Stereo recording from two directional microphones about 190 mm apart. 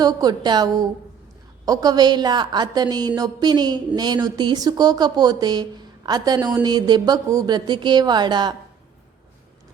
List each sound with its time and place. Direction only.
0.0 s a woman's voice: 20° right (ahead or behind)